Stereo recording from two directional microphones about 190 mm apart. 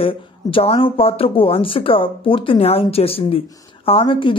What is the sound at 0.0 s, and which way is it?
Speech, 30° left (ahead or behind).